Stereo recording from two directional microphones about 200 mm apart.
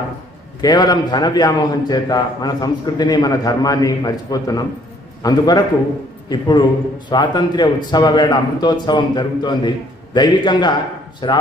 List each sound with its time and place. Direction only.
0.6 s a man's voice: 20° left (ahead or behind)